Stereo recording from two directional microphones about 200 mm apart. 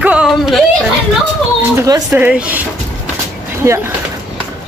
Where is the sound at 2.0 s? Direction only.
5° right (ahead or behind).